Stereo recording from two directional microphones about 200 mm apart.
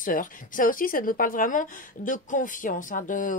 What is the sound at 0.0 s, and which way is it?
A woman's voice, 40° left (ahead or behind).